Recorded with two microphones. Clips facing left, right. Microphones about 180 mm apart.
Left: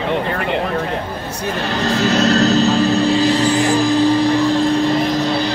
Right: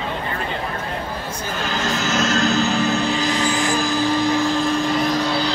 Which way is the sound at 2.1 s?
35° left (ahead or behind).